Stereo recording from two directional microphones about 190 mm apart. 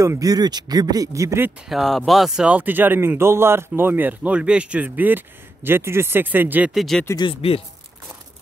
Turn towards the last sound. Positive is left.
turn(degrees=30)  # may be behind; listen again after turning